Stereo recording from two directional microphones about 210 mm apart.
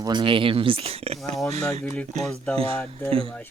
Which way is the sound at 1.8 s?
5° left (ahead or behind).